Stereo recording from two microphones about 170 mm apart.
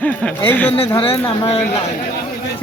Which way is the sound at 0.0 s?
10° left (ahead or behind).